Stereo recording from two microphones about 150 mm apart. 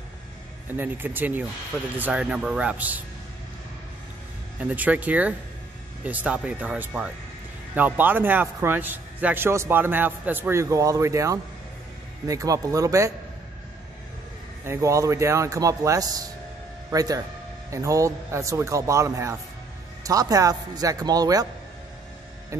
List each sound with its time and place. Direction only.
0.7 s a man's voice: 15° right (ahead or behind)
4.6 s a man's voice: 10° right (ahead or behind)
14.6 s speech: 20° right (ahead or behind)
22.5 s speech: 20° right (ahead or behind)